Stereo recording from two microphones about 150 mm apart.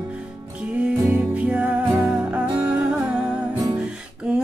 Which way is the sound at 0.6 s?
10° right (ahead or behind).